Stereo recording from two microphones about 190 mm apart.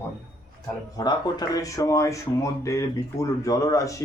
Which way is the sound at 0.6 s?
20° left (ahead or behind).